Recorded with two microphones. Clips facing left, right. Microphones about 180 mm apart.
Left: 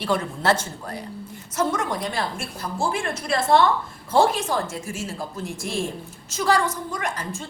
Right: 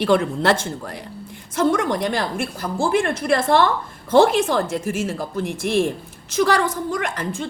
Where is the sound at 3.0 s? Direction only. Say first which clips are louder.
Right 6 dB; 55° right (ahead or behind).